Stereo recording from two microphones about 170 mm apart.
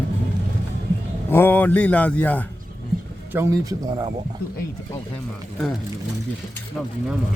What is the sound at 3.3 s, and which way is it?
Speech, 20° right (ahead or behind).